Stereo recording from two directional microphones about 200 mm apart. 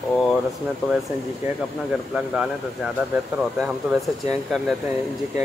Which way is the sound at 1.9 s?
Centre (ahead or behind).